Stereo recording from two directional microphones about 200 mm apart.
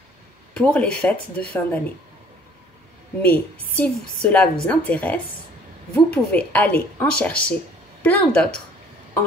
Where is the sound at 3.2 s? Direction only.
10° left (ahead or behind).